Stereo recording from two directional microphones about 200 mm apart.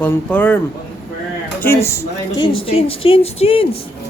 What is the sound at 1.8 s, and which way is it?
Speech, 20° left (ahead or behind).